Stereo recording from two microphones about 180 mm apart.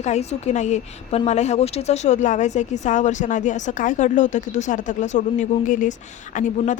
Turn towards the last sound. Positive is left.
turn(degrees=45)  # may be behind; listen again after turning